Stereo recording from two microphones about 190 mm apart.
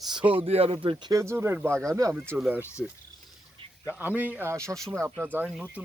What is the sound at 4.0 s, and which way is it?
Speech, 10° right (ahead or behind).